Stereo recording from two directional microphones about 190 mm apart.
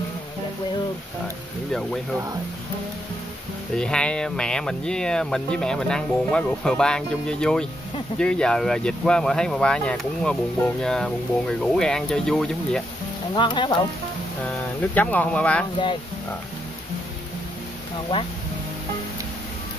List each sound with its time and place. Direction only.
1.7 s speech: centre (ahead or behind)
3.7 s speech: 5° left (ahead or behind)
13.3 s speech: 25° left (ahead or behind)
14.8 s speech: 10° left (ahead or behind)